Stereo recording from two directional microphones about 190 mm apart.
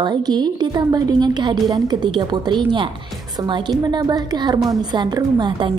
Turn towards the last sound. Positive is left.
turn(degrees=-25)  # may be behind; listen again after turning